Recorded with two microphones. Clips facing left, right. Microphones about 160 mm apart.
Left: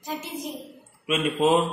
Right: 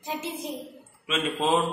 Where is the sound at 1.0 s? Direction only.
15° left (ahead or behind).